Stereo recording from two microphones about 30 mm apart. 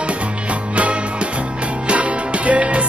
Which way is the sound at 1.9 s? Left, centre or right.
Right.